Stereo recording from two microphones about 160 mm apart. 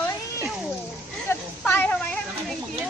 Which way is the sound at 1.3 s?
15° left (ahead or behind).